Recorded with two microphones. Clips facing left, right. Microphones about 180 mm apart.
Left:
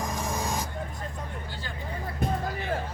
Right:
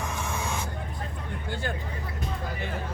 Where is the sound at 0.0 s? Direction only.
35° left (ahead or behind).